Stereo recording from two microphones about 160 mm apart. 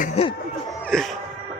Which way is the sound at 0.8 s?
Centre (ahead or behind).